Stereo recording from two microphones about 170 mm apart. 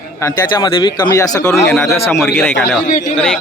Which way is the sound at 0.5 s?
25° left (ahead or behind).